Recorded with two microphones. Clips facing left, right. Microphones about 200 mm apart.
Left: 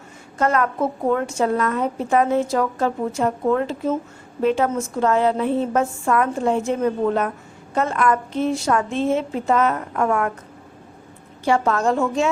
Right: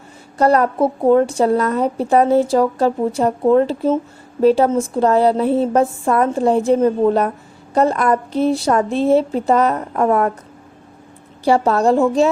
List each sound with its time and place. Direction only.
0.3 s a woman's voice: 35° right (ahead or behind)
11.4 s a woman's voice: 35° right (ahead or behind)